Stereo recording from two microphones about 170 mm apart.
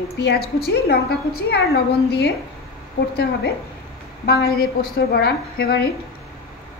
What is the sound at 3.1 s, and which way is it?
A woman's voice, 65° left (ahead or behind).